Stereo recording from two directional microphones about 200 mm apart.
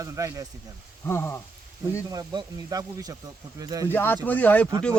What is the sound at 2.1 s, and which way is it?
Speech, 20° right (ahead or behind).